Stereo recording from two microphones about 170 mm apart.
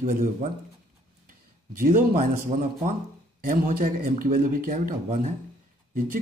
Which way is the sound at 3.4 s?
55° right (ahead or behind).